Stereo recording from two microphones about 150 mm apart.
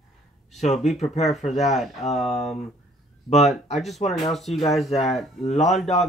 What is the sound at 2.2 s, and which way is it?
Speech, centre (ahead or behind).